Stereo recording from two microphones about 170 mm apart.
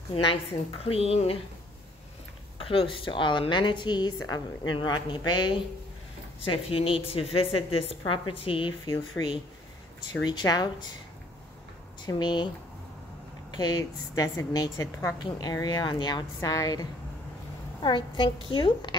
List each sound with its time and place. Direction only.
0.1 s a woman's voice: 30° left (ahead or behind)
2.6 s a woman's voice: 35° left (ahead or behind)
10.2 s a woman's voice: 25° left (ahead or behind)
12.1 s a woman's voice: 25° left (ahead or behind)
13.5 s a woman's voice: 25° left (ahead or behind)
17.8 s a woman's voice: 30° left (ahead or behind)